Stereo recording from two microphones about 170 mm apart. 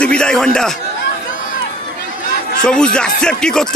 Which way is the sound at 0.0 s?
5° left (ahead or behind).